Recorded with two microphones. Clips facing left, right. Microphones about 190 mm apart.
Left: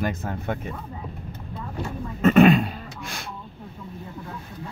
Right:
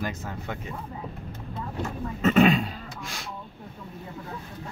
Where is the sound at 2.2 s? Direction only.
55° left (ahead or behind).